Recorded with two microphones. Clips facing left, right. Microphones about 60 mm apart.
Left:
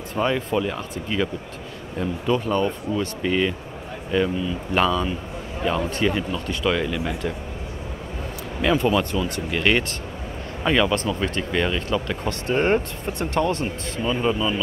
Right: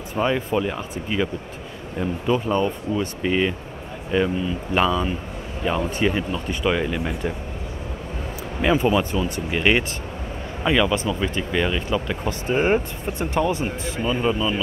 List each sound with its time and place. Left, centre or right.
0.1 s speech: centre
8.5 s speech: centre
10.6 s speech: centre